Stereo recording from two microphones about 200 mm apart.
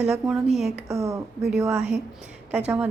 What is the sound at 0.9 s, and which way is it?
Speech, 15° right (ahead or behind).